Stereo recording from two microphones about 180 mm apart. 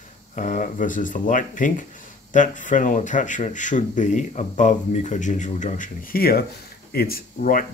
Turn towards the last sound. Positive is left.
turn(degrees=55)  # may be behind; listen again after turning